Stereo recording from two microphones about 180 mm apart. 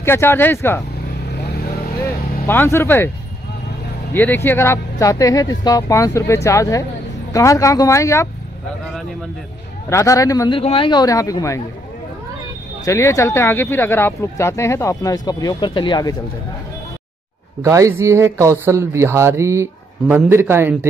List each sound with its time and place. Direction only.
0.0 s speech: 15° left (ahead or behind)
1.3 s vehicle: 60° left (ahead or behind)
2.4 s speech: 10° left (ahead or behind)
4.1 s speech: 10° left (ahead or behind)
9.8 s speech: 15° left (ahead or behind)
10.6 s speech: 30° left (ahead or behind)
12.8 s speech: 15° left (ahead or behind)
17.6 s speech: 15° right (ahead or behind)